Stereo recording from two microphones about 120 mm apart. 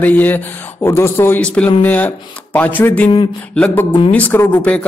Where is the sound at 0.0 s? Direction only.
15° left (ahead or behind).